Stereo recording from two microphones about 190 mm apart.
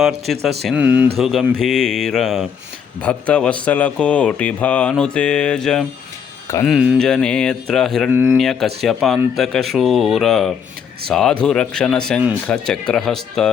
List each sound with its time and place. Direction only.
0.0 s a man's voice: centre (ahead or behind)
8.1 s speech: 10° right (ahead or behind)
8.4 s a man's voice: centre (ahead or behind)